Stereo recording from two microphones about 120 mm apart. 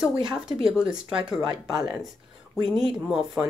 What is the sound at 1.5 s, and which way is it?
Speech, 35° right (ahead or behind).